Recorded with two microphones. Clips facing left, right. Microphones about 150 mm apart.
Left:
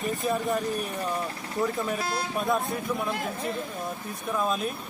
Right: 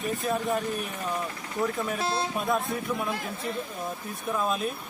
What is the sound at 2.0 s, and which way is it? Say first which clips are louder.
Speech: right 2 dB; 25° right (ahead or behind).